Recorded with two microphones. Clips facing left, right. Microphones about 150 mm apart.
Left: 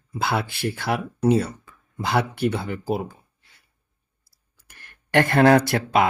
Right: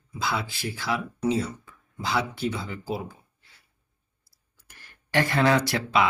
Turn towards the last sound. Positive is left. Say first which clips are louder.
# left 5 dB
turn(degrees=50)  # may be behind; listen again after turning